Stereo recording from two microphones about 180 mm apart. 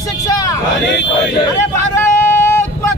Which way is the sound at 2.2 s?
10° left (ahead or behind).